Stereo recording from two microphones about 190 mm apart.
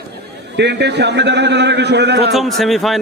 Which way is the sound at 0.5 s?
65° right (ahead or behind).